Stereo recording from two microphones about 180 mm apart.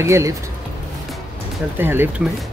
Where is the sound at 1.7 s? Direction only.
10° right (ahead or behind).